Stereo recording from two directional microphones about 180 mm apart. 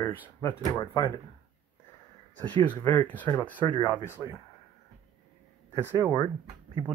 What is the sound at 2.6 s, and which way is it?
Speech, 25° left (ahead or behind).